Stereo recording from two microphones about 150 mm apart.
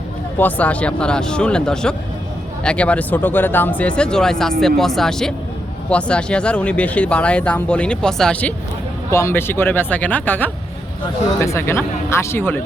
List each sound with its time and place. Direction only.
0.3 s speech: 10° left (ahead or behind)